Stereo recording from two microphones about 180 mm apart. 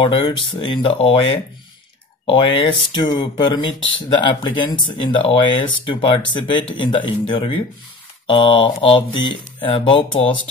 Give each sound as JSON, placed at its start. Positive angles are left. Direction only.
{"t": 0.0, "sound": "speech", "side_deg": 30}